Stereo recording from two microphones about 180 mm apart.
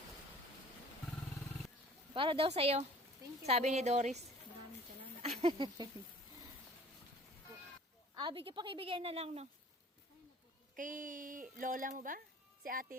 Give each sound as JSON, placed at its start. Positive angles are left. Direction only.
{"t": 2.1, "sound": "a woman's voice", "side_deg": -30}
{"t": 5.2, "sound": "speech", "side_deg": -30}
{"t": 8.1, "sound": "a woman's voice", "side_deg": -25}
{"t": 10.8, "sound": "speech", "side_deg": -45}